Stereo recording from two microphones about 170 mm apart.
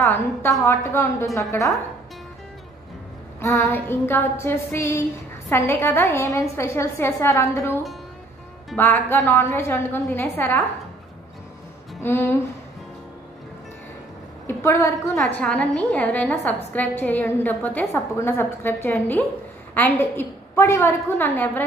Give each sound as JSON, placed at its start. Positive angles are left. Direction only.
{"t": 0.1, "sound": "a woman's voice", "side_deg": 15}
{"t": 3.3, "sound": "a woman's voice", "side_deg": 15}
{"t": 12.0, "sound": "a woman's voice", "side_deg": 15}
{"t": 14.5, "sound": "a woman's voice", "side_deg": 15}
{"t": 15.4, "sound": "a woman's voice", "side_deg": 5}